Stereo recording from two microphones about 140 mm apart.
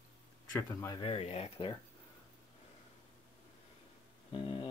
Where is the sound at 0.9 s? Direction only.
45° left (ahead or behind).